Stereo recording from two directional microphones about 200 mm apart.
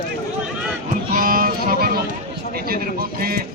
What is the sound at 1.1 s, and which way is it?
Speech, 45° right (ahead or behind).